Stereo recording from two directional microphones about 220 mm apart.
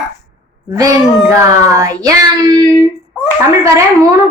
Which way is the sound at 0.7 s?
15° right (ahead or behind).